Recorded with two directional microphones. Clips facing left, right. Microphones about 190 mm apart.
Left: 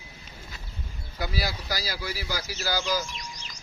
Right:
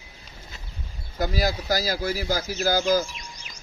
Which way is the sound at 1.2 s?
45° right (ahead or behind).